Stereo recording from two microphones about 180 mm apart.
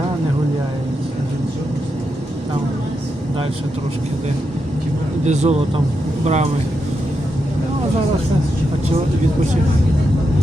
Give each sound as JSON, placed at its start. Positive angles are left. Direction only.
{"t": 5.2, "sound": "speech", "side_deg": -40}